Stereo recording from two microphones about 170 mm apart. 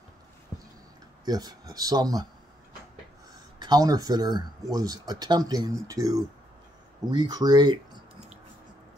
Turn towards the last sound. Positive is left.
turn(degrees=-25)  # may be behind; listen again after turning